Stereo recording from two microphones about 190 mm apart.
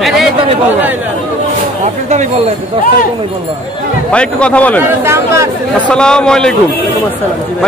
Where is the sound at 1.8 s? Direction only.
40° right (ahead or behind).